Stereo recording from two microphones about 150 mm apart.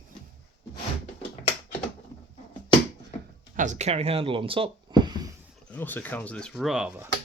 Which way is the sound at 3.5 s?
55° right (ahead or behind).